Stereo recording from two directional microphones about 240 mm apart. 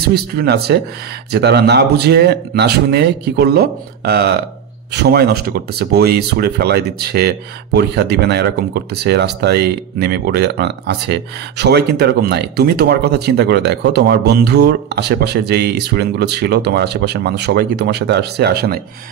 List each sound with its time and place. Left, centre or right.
0.0 s speech: right